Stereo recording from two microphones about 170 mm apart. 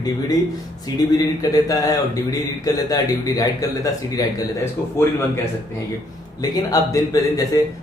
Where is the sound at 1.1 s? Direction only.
20° left (ahead or behind).